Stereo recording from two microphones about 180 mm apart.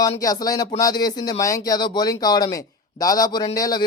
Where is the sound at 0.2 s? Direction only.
20° left (ahead or behind).